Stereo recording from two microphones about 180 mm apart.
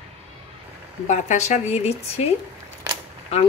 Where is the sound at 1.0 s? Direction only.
40° left (ahead or behind).